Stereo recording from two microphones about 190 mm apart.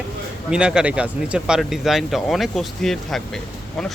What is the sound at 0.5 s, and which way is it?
Speech, 5° right (ahead or behind).